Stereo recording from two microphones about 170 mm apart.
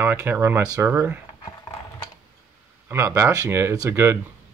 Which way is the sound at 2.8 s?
15° right (ahead or behind).